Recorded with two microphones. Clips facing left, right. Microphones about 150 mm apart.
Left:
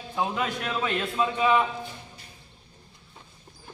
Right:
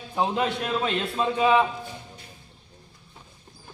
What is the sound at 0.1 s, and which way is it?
A man's voice, 30° right (ahead or behind).